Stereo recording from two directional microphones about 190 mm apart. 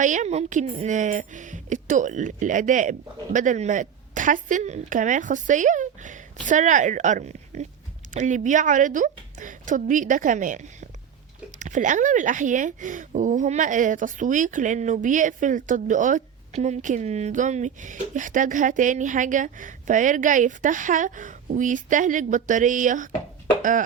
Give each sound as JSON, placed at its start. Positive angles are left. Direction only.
{"t": 0.0, "sound": "a woman's voice", "side_deg": -40}